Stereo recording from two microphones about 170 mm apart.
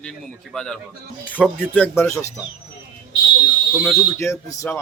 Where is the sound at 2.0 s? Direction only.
15° left (ahead or behind).